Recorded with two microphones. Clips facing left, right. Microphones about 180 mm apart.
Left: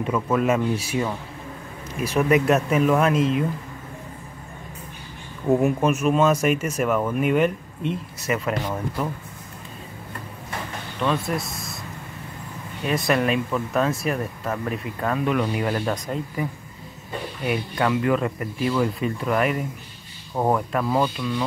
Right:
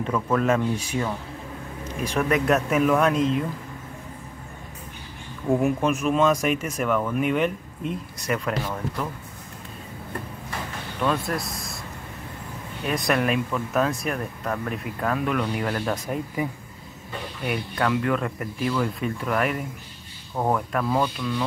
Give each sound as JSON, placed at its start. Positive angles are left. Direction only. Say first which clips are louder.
{"t": 0.0, "sound": "speech", "louder": "left 1 dB", "side_deg": 10}
{"t": 5.5, "sound": "speech", "louder": "left 2 dB", "side_deg": 0}
{"t": 8.6, "sound": "speech", "louder": "left 3 dB", "side_deg": 15}
{"t": 11.0, "sound": "speech", "louder": "left 1 dB", "side_deg": 0}
{"t": 12.8, "sound": "speech", "louder": "left 2 dB", "side_deg": 0}
{"t": 16.4, "sound": "speech", "louder": "right 1 dB", "side_deg": -15}
{"t": 17.5, "sound": "speech", "louder": "left 2 dB", "side_deg": 5}